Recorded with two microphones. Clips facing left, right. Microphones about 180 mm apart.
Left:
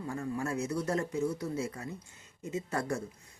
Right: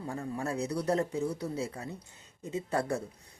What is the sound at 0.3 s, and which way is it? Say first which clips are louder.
Speech: right 1 dB; 35° right (ahead or behind).